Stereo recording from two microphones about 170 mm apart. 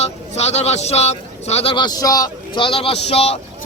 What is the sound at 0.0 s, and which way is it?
Speech, 40° left (ahead or behind).